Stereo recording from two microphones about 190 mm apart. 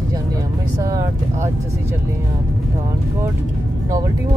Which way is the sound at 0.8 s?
15° right (ahead or behind).